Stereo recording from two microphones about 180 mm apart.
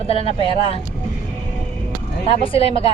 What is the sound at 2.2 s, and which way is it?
Speech, 30° left (ahead or behind).